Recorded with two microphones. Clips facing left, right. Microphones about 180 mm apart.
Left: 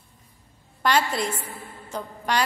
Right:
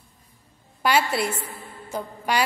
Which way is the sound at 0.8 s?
10° right (ahead or behind).